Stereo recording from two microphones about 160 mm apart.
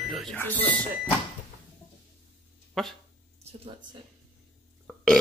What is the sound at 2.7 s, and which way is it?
Speech, centre (ahead or behind).